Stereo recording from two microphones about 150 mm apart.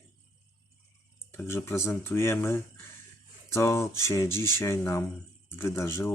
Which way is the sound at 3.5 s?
20° left (ahead or behind).